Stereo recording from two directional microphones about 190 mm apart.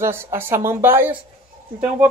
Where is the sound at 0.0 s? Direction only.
10° right (ahead or behind).